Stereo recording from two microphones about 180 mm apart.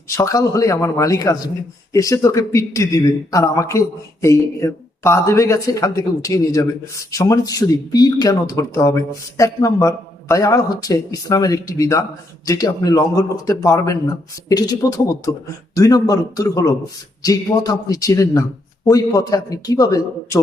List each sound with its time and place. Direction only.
0.2 s a man's voice: 15° left (ahead or behind)